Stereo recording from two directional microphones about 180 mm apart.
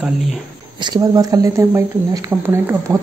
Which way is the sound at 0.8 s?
20° right (ahead or behind).